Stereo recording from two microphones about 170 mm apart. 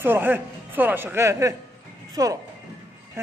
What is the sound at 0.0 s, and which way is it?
Speech, 10° right (ahead or behind).